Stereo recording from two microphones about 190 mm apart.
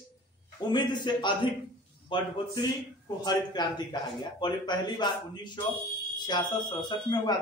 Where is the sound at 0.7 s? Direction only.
25° left (ahead or behind).